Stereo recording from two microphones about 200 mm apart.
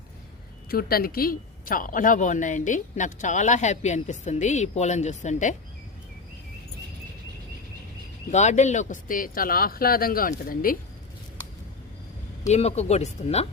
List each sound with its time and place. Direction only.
0.7 s a woman's voice: 50° left (ahead or behind)
8.3 s speech: 35° left (ahead or behind)
12.5 s a woman's voice: 35° left (ahead or behind)